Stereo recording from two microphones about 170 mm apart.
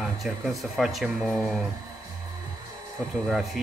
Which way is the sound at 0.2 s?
Centre (ahead or behind).